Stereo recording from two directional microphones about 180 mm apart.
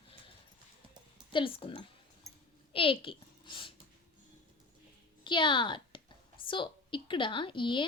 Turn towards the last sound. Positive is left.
turn(degrees=25)  # may be behind; listen again after turning